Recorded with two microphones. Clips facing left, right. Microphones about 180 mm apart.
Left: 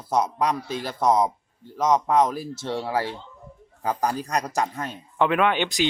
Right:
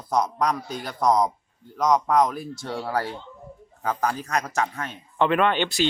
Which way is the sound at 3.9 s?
10° left (ahead or behind).